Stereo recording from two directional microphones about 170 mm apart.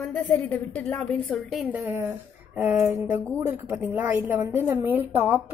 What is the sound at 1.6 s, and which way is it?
A woman's voice, 15° right (ahead or behind).